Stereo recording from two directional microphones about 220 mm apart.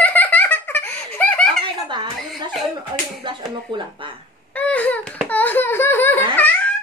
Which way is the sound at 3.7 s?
25° right (ahead or behind).